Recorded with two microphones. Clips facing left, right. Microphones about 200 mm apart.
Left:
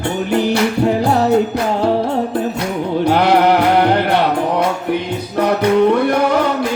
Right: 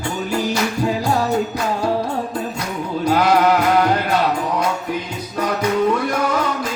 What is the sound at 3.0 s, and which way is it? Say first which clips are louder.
Music: left 2 dB; 65° left (ahead or behind).